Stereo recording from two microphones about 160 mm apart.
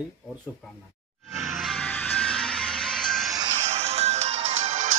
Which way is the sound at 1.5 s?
Centre (ahead or behind).